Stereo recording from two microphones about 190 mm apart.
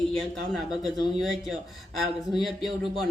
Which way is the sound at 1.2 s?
Centre (ahead or behind).